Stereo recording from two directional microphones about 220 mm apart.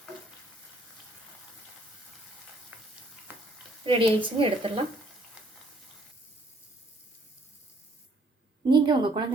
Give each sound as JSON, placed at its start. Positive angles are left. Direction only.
{"t": 2.7, "sound": "frying", "side_deg": -5}
{"t": 3.8, "sound": "a woman's voice", "side_deg": -20}
{"t": 8.7, "sound": "a woman's voice", "side_deg": -20}